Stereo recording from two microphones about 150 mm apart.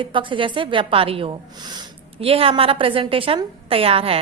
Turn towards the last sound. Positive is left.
turn(degrees=-40)  # may be behind; listen again after turning